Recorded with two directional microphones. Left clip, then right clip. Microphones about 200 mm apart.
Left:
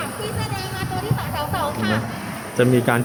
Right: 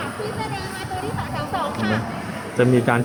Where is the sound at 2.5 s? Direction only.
Centre (ahead or behind).